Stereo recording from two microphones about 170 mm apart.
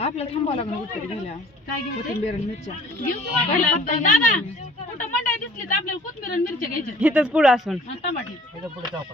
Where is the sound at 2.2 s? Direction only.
40° left (ahead or behind).